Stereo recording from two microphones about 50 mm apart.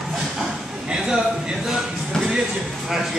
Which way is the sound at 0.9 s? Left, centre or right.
Centre.